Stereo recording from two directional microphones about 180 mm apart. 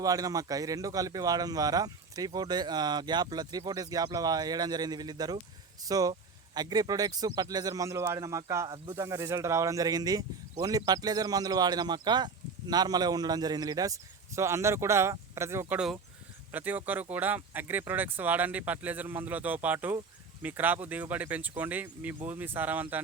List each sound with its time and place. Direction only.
0.0 s a man's voice: 20° right (ahead or behind)